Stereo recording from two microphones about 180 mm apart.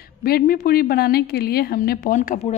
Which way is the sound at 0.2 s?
55° left (ahead or behind).